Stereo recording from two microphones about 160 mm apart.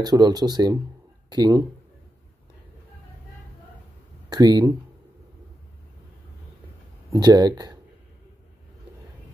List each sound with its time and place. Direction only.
0.0 s speech: 25° right (ahead or behind)
4.3 s speech: 25° right (ahead or behind)
7.1 s speech: 25° right (ahead or behind)